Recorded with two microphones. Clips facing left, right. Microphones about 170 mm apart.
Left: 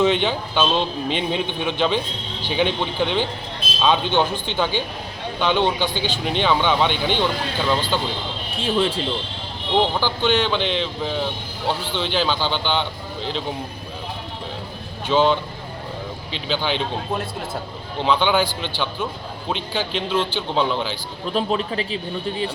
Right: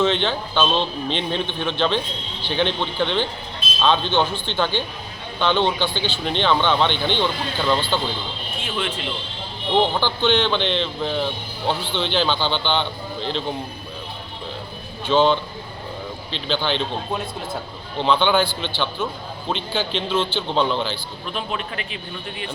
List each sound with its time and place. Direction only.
0.0 s speech: 10° left (ahead or behind)
8.6 s speech: 35° left (ahead or behind)
9.9 s a man's voice: 5° left (ahead or behind)
15.0 s speech: 10° left (ahead or behind)
21.3 s speech: 35° left (ahead or behind)